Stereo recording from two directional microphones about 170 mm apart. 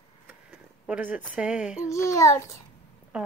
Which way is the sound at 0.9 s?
10° right (ahead or behind).